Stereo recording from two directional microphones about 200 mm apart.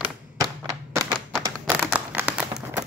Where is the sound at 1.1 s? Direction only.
5° right (ahead or behind).